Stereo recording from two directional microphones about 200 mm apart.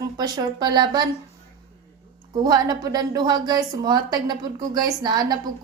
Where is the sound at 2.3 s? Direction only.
20° right (ahead or behind).